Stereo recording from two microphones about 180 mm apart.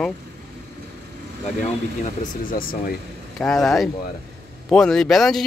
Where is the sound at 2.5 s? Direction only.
55° left (ahead or behind).